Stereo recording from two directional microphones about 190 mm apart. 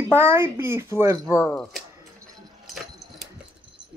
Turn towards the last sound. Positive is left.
turn(degrees=0)  # may be behind; listen again after turning